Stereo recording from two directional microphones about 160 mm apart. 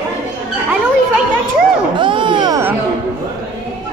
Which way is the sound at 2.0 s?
30° right (ahead or behind).